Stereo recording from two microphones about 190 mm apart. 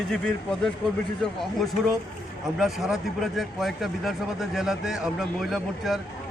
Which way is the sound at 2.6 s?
Centre (ahead or behind).